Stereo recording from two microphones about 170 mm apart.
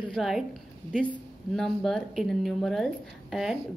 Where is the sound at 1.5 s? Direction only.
Centre (ahead or behind).